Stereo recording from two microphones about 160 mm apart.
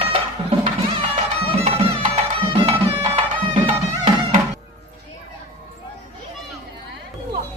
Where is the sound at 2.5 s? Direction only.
40° right (ahead or behind).